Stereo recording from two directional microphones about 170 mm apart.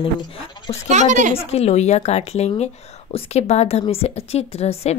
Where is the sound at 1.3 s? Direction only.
35° left (ahead or behind).